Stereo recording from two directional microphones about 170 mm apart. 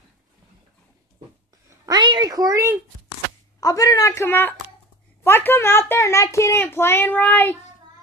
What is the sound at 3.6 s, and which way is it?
A child's voice, 20° left (ahead or behind).